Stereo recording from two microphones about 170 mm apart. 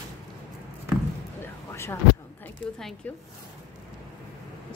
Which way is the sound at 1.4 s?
15° left (ahead or behind).